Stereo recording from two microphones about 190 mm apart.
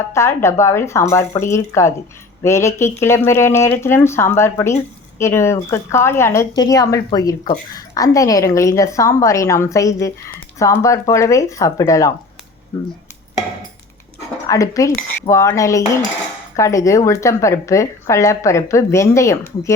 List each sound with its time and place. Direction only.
0.1 s a woman's voice: 15° left (ahead or behind)
14.4 s a woman's voice: 15° left (ahead or behind)